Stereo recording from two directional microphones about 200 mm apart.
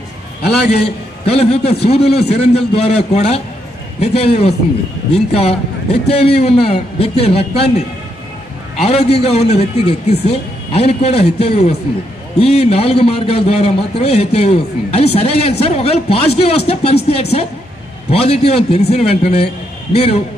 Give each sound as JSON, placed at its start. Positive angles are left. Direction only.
{"t": 1.2, "sound": "a man's voice", "side_deg": 30}